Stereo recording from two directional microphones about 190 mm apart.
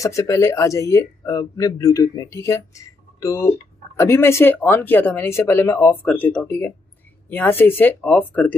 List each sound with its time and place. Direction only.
0.0 s speech: 15° left (ahead or behind)